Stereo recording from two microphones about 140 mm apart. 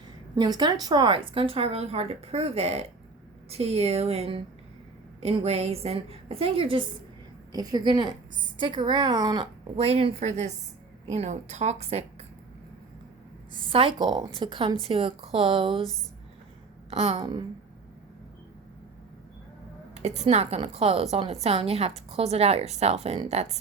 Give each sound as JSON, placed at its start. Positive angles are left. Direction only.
{"t": 0.3, "sound": "a woman's voice", "side_deg": -30}
{"t": 7.5, "sound": "a woman's voice", "side_deg": -30}
{"t": 9.7, "sound": "a woman's voice", "side_deg": -45}
{"t": 13.5, "sound": "a woman's voice", "side_deg": -35}
{"t": 16.9, "sound": "a woman's voice", "side_deg": -45}
{"t": 19.9, "sound": "a sound", "side_deg": -55}
{"t": 20.3, "sound": "a woman's voice", "side_deg": -50}